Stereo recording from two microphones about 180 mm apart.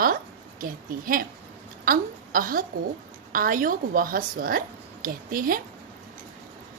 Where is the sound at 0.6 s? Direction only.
50° right (ahead or behind).